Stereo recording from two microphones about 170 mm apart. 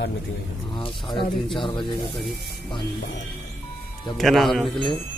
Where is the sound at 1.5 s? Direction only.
30° left (ahead or behind).